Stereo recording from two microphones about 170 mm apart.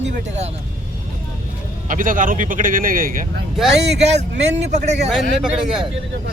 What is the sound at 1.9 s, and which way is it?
Speech, 50° right (ahead or behind).